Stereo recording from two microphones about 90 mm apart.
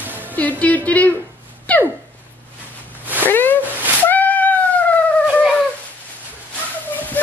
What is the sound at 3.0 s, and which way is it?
Zipper, 20° right (ahead or behind).